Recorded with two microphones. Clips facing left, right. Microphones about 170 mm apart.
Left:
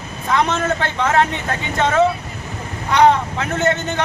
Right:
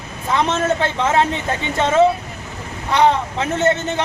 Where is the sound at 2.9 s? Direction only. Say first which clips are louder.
Left 2 dB; 30° right (ahead or behind).